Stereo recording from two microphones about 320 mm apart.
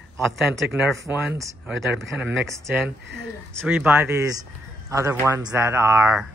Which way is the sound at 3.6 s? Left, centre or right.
Centre.